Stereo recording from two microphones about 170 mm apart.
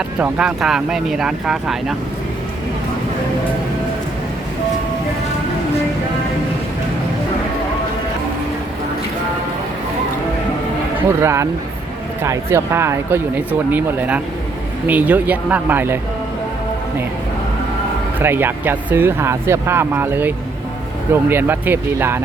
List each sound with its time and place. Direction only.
0.2 s speech: 5° right (ahead or behind)
11.2 s speech: 15° right (ahead or behind)
18.2 s speech: 10° right (ahead or behind)